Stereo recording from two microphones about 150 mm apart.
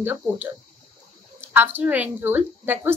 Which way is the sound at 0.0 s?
15° right (ahead or behind).